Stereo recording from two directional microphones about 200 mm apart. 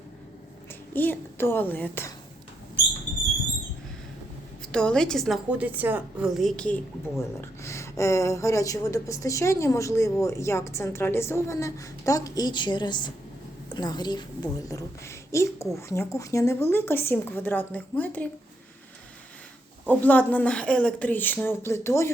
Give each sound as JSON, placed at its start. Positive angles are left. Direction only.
{"t": 0.9, "sound": "a woman's voice", "side_deg": 10}
{"t": 4.7, "sound": "a woman's voice", "side_deg": 5}
{"t": 19.9, "sound": "a woman's voice", "side_deg": 10}